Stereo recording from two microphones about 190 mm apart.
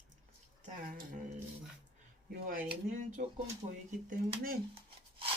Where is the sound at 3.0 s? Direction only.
40° right (ahead or behind).